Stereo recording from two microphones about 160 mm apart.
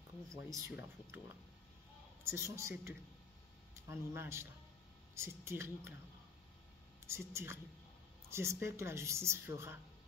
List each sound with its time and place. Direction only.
0.5 s a woman's voice: 20° right (ahead or behind)
7.1 s a woman's voice: 15° right (ahead or behind)